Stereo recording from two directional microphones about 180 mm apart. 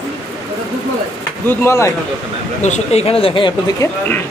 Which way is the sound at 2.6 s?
40° left (ahead or behind).